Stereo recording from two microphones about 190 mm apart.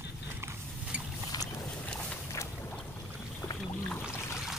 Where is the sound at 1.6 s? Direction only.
5° left (ahead or behind).